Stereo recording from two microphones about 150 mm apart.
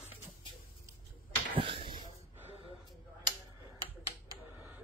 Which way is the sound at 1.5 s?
35° right (ahead or behind).